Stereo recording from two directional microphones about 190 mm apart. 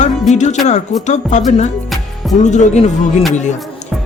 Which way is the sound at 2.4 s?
40° left (ahead or behind).